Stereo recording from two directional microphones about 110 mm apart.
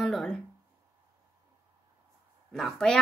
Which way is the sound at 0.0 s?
5° left (ahead or behind).